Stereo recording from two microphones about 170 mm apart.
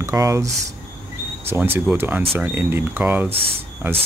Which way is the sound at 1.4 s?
15° right (ahead or behind).